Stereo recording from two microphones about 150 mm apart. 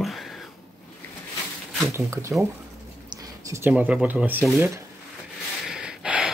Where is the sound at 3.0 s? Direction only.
20° right (ahead or behind).